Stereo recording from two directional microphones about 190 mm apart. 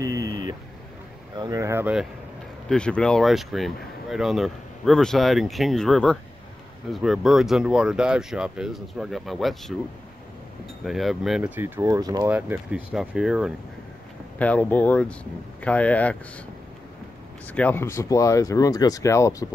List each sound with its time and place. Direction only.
0.0 s a sound: 20° right (ahead or behind)
2.7 s speech: 5° left (ahead or behind)
10.8 s speech: centre (ahead or behind); by 12.3 s 20° right (ahead or behind)
12.3 s speech: 10° right (ahead or behind)
14.4 s speech: 10° left (ahead or behind)
17.5 s speech: 10° left (ahead or behind)